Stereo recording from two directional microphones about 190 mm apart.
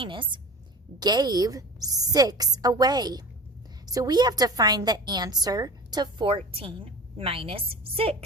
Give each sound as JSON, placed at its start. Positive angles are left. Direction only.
{"t": 0.0, "sound": "a woman's voice", "side_deg": -25}